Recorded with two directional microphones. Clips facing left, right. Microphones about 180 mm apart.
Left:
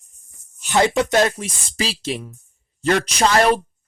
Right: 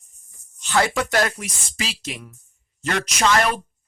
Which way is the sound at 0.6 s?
20° left (ahead or behind).